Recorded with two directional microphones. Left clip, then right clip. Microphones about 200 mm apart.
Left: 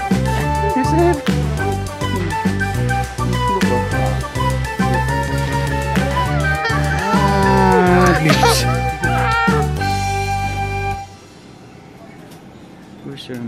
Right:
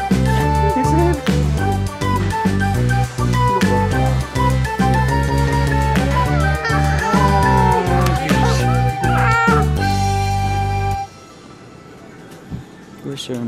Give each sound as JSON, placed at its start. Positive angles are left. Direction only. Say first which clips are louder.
{"t": 0.1, "sound": "music", "louder": "right 1 dB", "side_deg": 0}
{"t": 9.1, "sound": "music", "louder": "right 2 dB", "side_deg": -30}
{"t": 9.5, "sound": "music", "louder": "right 1 dB", "side_deg": 0}
{"t": 13.1, "sound": "music", "louder": "right 4 dB", "side_deg": -25}